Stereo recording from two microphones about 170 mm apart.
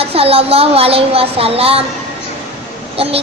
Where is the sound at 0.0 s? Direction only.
35° right (ahead or behind).